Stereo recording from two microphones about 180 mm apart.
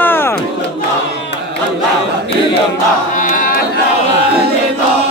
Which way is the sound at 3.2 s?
50° left (ahead or behind).